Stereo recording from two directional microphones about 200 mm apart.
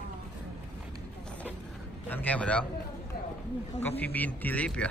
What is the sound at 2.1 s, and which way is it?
Speech, 10° left (ahead or behind).